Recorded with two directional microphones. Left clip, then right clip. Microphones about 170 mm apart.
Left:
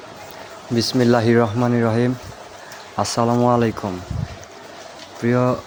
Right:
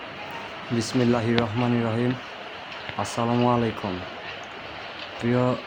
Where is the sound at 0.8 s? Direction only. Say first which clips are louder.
Left 7 dB; 25° left (ahead or behind).